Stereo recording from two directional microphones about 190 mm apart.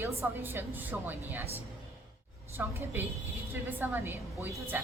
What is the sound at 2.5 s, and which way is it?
A woman's voice, 10° right (ahead or behind).